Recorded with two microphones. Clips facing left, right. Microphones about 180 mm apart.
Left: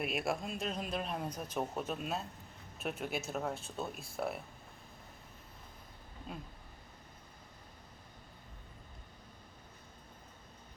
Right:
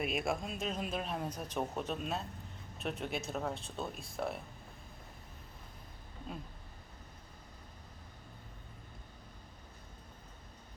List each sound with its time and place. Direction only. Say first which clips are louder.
0.0 s speech: right 1 dB; centre (ahead or behind)